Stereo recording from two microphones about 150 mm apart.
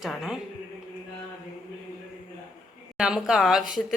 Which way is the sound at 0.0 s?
Centre (ahead or behind).